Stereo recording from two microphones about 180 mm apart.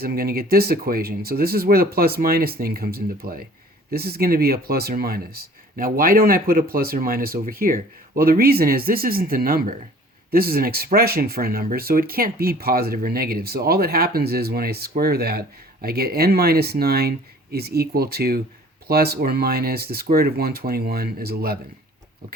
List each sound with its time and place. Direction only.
0.0 s speech: 55° right (ahead or behind)